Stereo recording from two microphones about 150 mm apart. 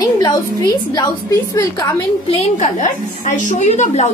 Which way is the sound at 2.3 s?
50° left (ahead or behind).